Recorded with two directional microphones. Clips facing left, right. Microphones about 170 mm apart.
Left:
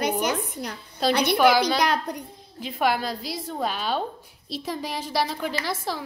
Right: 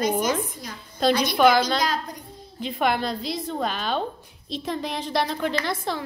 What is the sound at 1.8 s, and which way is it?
Speech, 65° left (ahead or behind).